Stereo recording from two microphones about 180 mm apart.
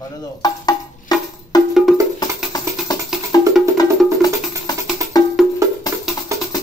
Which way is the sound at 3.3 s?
20° left (ahead or behind).